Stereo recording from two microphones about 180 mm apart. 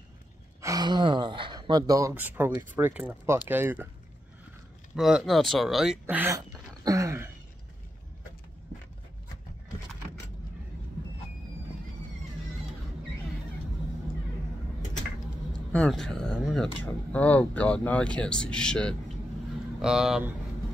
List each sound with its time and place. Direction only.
0.6 s speech: 20° right (ahead or behind)
4.9 s speech: centre (ahead or behind); by 7.2 s 20° right (ahead or behind)
15.5 s speech: 5° left (ahead or behind)